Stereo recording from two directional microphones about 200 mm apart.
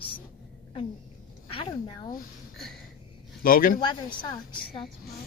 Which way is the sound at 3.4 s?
45° left (ahead or behind).